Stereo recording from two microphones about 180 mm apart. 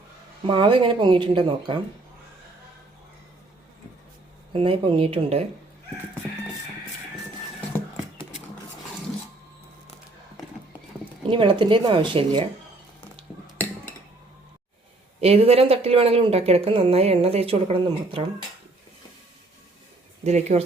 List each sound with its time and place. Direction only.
0.4 s speech: 30° right (ahead or behind)
4.5 s speech: 30° right (ahead or behind)
11.3 s speech: 30° right (ahead or behind)
15.2 s speech: 35° right (ahead or behind)
20.2 s speech: 35° right (ahead or behind)